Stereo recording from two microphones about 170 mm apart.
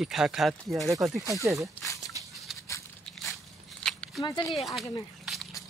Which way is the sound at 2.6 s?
15° left (ahead or behind).